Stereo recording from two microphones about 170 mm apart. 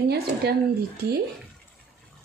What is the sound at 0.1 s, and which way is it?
Speech, 70° right (ahead or behind).